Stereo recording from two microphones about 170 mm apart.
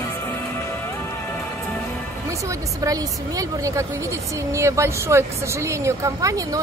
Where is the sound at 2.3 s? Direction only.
20° right (ahead or behind).